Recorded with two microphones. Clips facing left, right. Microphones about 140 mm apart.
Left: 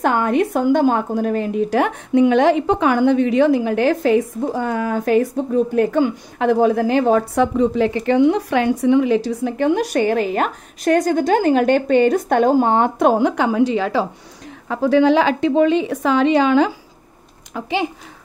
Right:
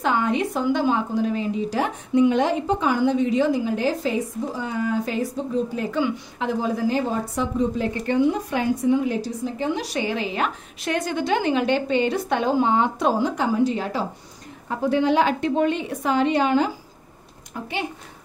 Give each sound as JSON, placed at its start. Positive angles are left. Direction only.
{"t": 0.0, "sound": "a woman's voice", "side_deg": 55}